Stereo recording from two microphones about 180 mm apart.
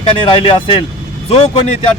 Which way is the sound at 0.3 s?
30° left (ahead or behind).